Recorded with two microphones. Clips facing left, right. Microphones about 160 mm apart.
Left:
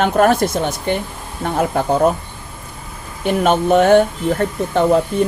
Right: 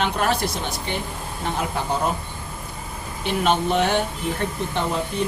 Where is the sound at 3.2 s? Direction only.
50° left (ahead or behind).